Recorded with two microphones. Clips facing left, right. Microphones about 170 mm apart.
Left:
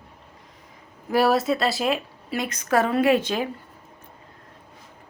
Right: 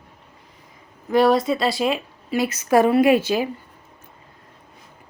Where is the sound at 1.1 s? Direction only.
5° left (ahead or behind).